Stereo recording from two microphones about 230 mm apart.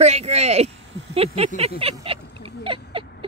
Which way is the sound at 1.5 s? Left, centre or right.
Right.